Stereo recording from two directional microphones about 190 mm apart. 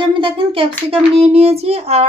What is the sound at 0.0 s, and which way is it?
Speech, 25° right (ahead or behind).